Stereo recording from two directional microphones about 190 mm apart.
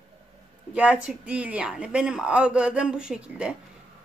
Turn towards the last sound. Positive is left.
turn(degrees=-5)  # may be behind; listen again after turning